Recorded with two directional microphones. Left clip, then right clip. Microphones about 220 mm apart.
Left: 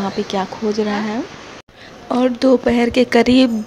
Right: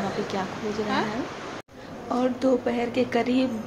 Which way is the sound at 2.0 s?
45° left (ahead or behind).